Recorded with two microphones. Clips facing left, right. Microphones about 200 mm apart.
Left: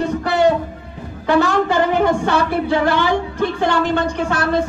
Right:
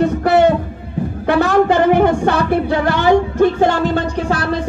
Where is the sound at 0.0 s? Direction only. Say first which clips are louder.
Right 5 dB; 60° right (ahead or behind).